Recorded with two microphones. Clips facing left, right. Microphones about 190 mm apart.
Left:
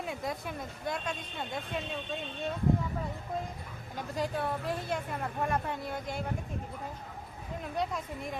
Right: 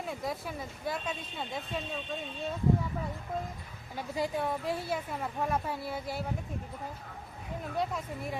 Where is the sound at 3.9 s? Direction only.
10° right (ahead or behind).